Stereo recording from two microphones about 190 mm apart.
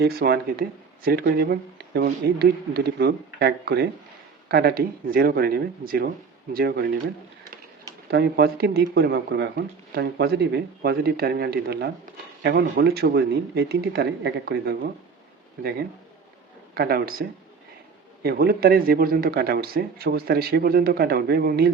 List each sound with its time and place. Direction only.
0.0 s speech: 55° right (ahead or behind)
8.1 s speech: 60° right (ahead or behind)
16.7 s speech: 50° right (ahead or behind)